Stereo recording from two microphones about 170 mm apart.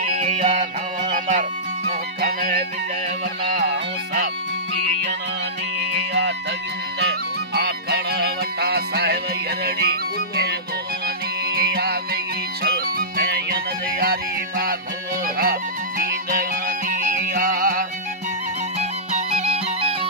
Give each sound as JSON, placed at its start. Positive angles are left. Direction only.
{"t": 0.1, "sound": "music", "side_deg": -45}
{"t": 5.8, "sound": "music", "side_deg": -85}
{"t": 11.5, "sound": "music", "side_deg": -65}
{"t": 18.8, "sound": "music", "side_deg": -40}